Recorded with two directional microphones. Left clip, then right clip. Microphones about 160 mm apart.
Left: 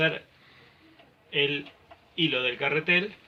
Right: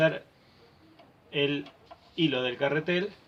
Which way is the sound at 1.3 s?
55° right (ahead or behind).